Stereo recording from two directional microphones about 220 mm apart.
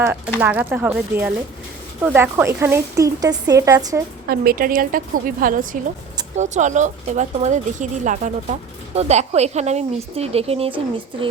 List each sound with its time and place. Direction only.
0.3 s a woman's voice: 10° right (ahead or behind)
4.3 s speech: 40° right (ahead or behind); by 11.3 s 25° right (ahead or behind)